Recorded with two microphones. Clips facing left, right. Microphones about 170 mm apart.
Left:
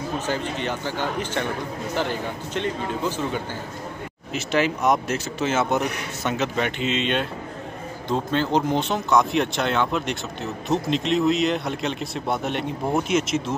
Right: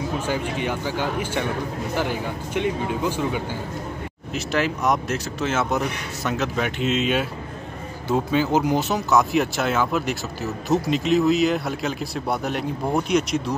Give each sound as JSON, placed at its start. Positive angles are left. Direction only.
{"t": 0.3, "sound": "speech", "side_deg": -10}
{"t": 4.3, "sound": "speech", "side_deg": 0}